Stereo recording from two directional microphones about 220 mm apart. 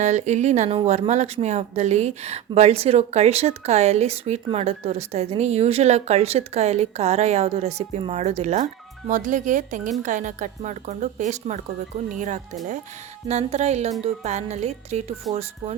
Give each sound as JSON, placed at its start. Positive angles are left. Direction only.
{"t": 0.0, "sound": "a woman's voice", "side_deg": -30}